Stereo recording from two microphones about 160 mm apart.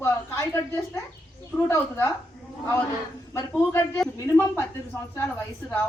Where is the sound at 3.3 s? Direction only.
15° left (ahead or behind).